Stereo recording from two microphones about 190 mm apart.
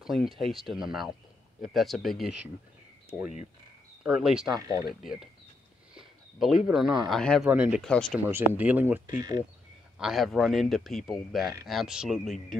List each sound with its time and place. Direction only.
0.0 s speech: centre (ahead or behind)
4.0 s speech: 5° right (ahead or behind)
4.5 s speech: 20° right (ahead or behind)
4.8 s speech: 50° left (ahead or behind)
5.9 s a sound: 5° right (ahead or behind)
6.7 s speech: centre (ahead or behind)
8.3 s speech: 10° right (ahead or behind)